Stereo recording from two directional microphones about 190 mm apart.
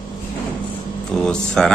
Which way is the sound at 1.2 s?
5° left (ahead or behind).